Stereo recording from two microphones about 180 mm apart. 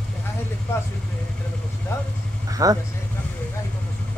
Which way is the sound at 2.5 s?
20° right (ahead or behind).